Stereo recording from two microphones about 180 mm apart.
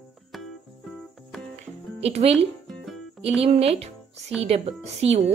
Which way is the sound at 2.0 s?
35° right (ahead or behind).